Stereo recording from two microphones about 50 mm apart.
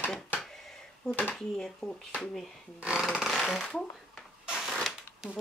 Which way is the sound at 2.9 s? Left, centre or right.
Centre.